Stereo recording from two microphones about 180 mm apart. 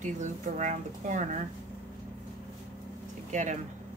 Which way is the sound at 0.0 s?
40° right (ahead or behind).